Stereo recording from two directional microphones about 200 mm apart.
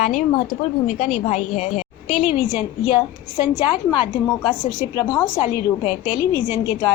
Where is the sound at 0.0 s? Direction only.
40° left (ahead or behind).